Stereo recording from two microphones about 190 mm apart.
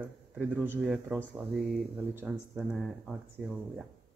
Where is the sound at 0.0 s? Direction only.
10° right (ahead or behind).